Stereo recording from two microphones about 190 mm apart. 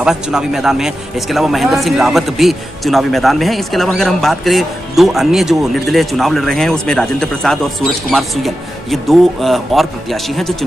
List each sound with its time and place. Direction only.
0.0 s a man's voice: 5° right (ahead or behind)